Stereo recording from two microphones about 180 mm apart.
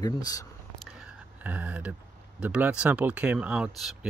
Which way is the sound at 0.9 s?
5° right (ahead or behind).